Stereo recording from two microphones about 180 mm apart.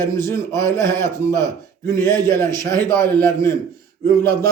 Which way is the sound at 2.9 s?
15° left (ahead or behind).